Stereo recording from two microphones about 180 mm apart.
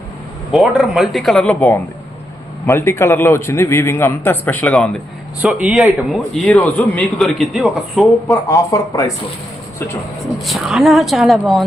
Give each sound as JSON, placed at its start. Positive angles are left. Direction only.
{"t": 0.5, "sound": "a man's voice", "side_deg": 0}
{"t": 5.4, "sound": "a man's voice", "side_deg": -5}
{"t": 8.4, "sound": "a man's voice", "side_deg": 15}
{"t": 10.4, "sound": "a man's voice", "side_deg": 0}